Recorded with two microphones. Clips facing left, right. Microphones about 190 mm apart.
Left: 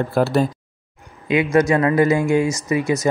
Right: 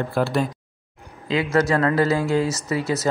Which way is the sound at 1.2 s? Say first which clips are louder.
Left 4 dB; 20° left (ahead or behind).